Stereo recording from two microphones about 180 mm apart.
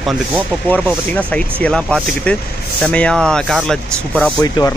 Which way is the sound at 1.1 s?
5° left (ahead or behind).